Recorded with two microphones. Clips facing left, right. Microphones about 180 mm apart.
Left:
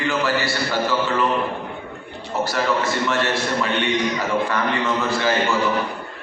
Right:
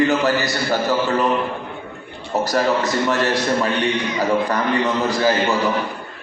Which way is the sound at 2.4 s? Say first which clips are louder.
Right 3 dB; 40° right (ahead or behind).